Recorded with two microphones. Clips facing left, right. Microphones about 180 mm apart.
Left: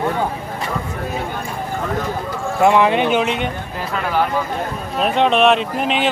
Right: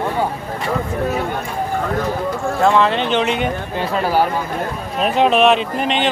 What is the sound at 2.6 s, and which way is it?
Speech, 15° left (ahead or behind).